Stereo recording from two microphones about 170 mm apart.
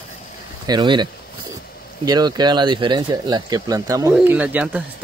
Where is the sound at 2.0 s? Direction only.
25° right (ahead or behind).